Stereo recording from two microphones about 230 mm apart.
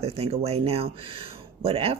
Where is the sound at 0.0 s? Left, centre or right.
Right.